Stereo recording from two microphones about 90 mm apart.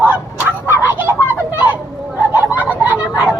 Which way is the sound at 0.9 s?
20° right (ahead or behind).